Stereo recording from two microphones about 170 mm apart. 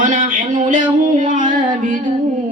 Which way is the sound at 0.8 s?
30° right (ahead or behind).